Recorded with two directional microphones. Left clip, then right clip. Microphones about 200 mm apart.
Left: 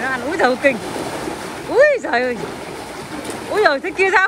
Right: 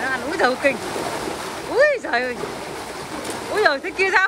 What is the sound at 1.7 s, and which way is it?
Speech, 5° right (ahead or behind).